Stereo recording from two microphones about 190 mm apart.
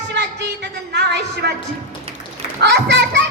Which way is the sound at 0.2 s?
65° right (ahead or behind).